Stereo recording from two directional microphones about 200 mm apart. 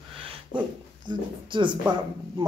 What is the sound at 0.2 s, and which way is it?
Dog, 25° right (ahead or behind).